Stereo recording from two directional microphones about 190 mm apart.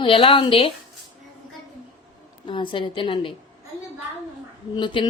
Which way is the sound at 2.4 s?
25° left (ahead or behind).